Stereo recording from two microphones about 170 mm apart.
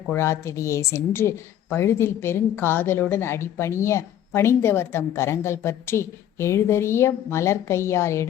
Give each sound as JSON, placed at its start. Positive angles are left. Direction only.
{"t": 0.1, "sound": "a woman's voice", "side_deg": 15}